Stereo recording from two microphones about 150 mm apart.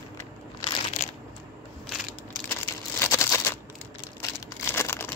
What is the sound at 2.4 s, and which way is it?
Crumpling, 20° left (ahead or behind).